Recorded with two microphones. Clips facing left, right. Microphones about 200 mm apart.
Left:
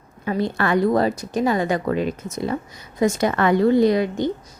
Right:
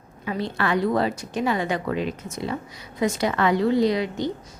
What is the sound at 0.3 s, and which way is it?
A woman's voice, 45° left (ahead or behind).